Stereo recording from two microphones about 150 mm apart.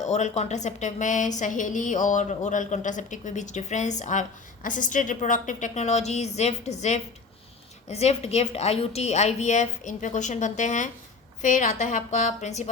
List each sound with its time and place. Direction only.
0.0 s a woman's voice: 50° left (ahead or behind)